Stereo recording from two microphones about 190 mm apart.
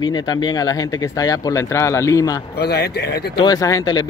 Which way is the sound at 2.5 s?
60° left (ahead or behind).